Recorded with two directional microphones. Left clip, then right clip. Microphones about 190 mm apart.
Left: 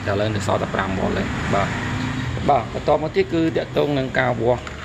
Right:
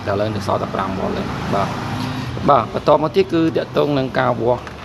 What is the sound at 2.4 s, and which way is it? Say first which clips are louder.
Speech: right 5 dB; 25° right (ahead or behind).